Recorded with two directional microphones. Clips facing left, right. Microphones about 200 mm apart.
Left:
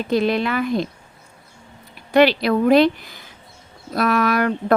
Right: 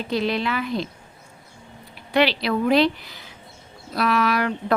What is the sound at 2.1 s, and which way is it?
Speech, 50° left (ahead or behind).